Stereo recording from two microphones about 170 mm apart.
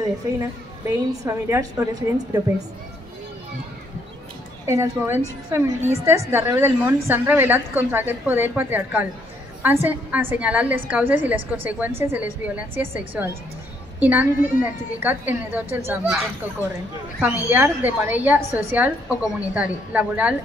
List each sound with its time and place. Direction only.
0.0 s a woman's voice: 20° right (ahead or behind)
4.6 s a woman's voice: 15° right (ahead or behind)
17.5 s a woman's voice: 10° right (ahead or behind)